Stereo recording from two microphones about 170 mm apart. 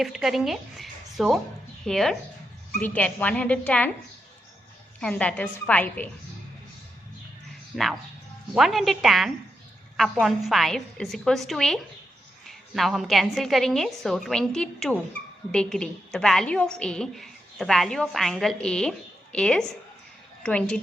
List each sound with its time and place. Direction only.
0.0 s a woman's voice: centre (ahead or behind)
4.9 s speech: 5° left (ahead or behind)
7.7 s a woman's voice: centre (ahead or behind)